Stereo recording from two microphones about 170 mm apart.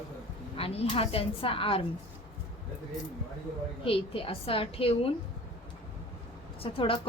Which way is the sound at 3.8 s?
30° left (ahead or behind).